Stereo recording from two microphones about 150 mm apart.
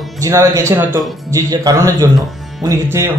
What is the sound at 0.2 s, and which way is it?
Speech, 20° right (ahead or behind).